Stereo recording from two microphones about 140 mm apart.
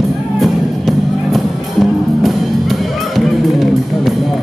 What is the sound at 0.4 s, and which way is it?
Music, centre (ahead or behind).